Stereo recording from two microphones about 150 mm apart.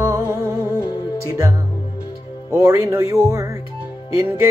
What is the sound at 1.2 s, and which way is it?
Music, 20° right (ahead or behind).